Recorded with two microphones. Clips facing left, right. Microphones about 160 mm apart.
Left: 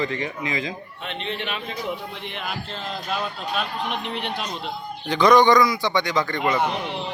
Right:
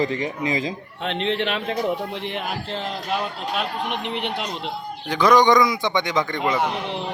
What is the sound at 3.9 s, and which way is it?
A man's voice, 20° right (ahead or behind).